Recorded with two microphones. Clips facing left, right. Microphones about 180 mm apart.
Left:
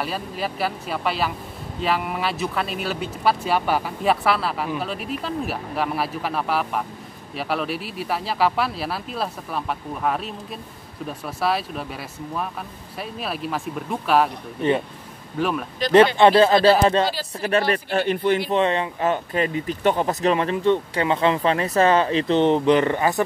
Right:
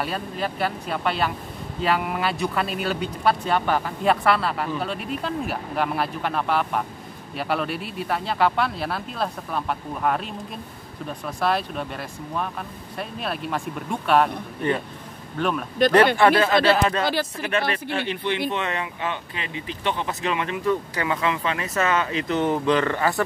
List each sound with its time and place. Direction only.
0.0 s speech: 5° left (ahead or behind)
15.3 s speech: 5° left (ahead or behind)
16.2 s speech: 25° left (ahead or behind); by 18.4 s 45° left (ahead or behind)
18.5 s speech: 30° left (ahead or behind)